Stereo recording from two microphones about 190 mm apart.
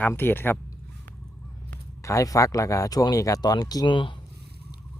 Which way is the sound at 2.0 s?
15° left (ahead or behind).